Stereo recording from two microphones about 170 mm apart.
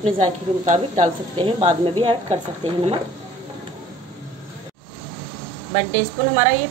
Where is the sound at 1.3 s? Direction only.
30° right (ahead or behind).